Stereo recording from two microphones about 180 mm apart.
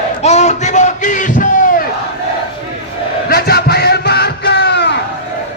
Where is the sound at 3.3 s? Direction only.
60° left (ahead or behind).